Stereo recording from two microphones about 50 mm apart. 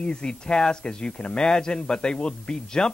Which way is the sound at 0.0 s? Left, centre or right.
Centre.